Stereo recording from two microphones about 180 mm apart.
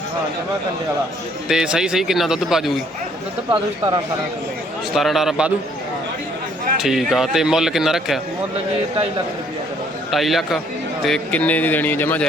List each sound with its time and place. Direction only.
1.5 s a man's voice: 5° right (ahead or behind)
3.5 s speech: 25° right (ahead or behind)
4.9 s a man's voice: centre (ahead or behind)
6.8 s a man's voice: centre (ahead or behind)
10.1 s a man's voice: centre (ahead or behind)